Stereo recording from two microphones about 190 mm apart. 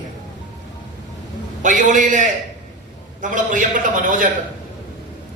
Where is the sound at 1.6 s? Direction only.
40° right (ahead or behind).